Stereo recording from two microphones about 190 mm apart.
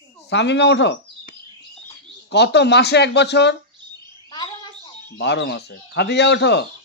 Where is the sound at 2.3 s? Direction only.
60° left (ahead or behind).